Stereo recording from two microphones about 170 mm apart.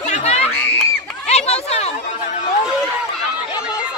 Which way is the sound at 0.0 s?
40° left (ahead or behind).